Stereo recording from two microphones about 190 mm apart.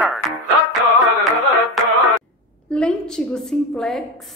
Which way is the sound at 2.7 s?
5° left (ahead or behind).